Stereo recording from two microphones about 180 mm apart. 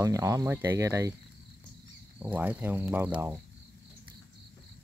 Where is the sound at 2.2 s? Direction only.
10° right (ahead or behind).